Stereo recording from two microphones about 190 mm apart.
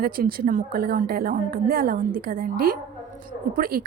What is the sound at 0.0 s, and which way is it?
A woman's voice, 50° right (ahead or behind).